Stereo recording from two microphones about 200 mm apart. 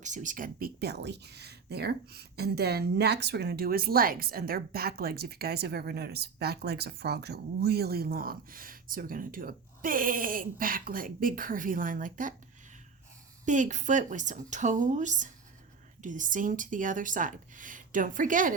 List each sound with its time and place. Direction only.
0.0 s speech: 40° right (ahead or behind)
13.4 s speech: 40° right (ahead or behind)